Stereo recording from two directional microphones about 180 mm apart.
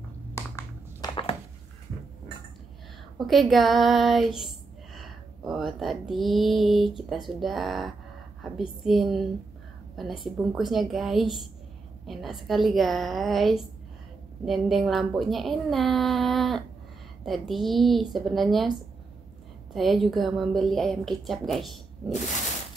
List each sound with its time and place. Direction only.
0.3 s a sound: 15° left (ahead or behind)
3.2 s child singing: centre (ahead or behind)
8.5 s a woman's voice: centre (ahead or behind)
19.7 s a woman's voice: centre (ahead or behind)